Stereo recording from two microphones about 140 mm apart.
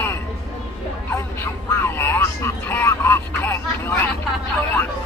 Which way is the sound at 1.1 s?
15° left (ahead or behind).